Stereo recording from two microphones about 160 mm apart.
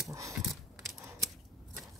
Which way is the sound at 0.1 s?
20° right (ahead or behind).